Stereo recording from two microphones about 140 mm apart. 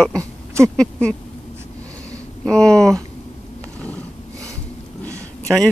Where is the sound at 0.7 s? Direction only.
5° left (ahead or behind).